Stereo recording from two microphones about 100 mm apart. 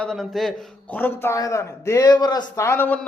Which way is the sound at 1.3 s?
35° left (ahead or behind).